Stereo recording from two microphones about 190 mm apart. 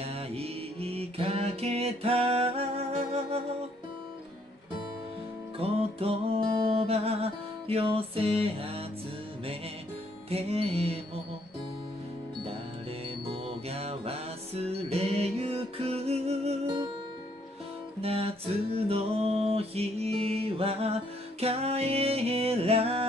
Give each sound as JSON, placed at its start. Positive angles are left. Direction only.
{"t": 0.0, "sound": "mantra", "side_deg": -30}
{"t": 5.6, "sound": "music", "side_deg": -30}
{"t": 10.3, "sound": "music", "side_deg": -30}
{"t": 13.3, "sound": "music", "side_deg": -30}
{"t": 18.0, "sound": "music", "side_deg": -30}